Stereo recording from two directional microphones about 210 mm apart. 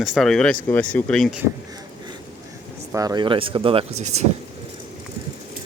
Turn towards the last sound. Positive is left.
turn(degrees=-30)  # may be behind; listen again after turning